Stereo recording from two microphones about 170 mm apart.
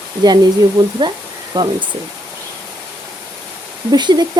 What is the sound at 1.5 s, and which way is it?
Speech, 30° right (ahead or behind).